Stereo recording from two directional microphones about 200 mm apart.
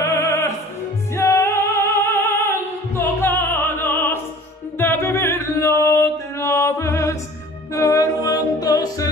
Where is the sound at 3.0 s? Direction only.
10° left (ahead or behind).